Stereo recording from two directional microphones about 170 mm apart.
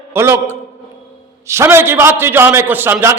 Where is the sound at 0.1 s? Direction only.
15° right (ahead or behind).